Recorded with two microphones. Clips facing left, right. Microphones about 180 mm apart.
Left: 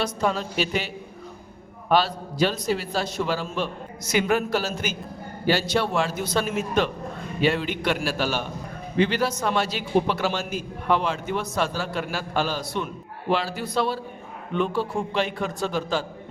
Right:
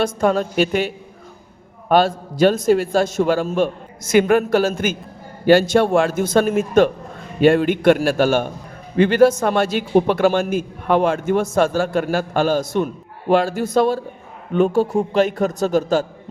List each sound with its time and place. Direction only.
0.0 s a man's voice: 50° right (ahead or behind)